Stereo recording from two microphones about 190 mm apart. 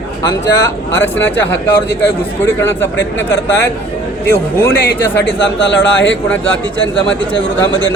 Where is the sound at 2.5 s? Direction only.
10° left (ahead or behind).